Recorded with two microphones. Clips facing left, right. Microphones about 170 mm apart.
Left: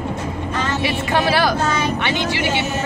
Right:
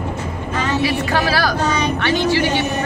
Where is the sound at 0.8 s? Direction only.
20° left (ahead or behind).